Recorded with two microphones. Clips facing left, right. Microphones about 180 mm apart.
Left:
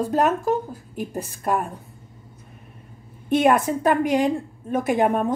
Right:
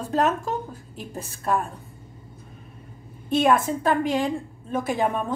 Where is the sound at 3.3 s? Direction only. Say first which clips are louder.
Left 2 dB; 20° left (ahead or behind).